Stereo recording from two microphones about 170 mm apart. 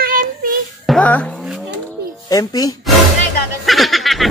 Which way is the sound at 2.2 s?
20° left (ahead or behind).